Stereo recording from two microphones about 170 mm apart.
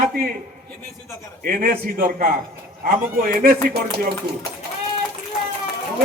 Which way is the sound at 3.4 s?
55° right (ahead or behind).